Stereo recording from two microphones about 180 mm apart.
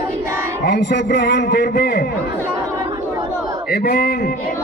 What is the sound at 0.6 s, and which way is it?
A man's voice, 70° left (ahead or behind).